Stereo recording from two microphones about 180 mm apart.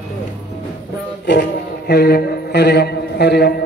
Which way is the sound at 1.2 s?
70° left (ahead or behind).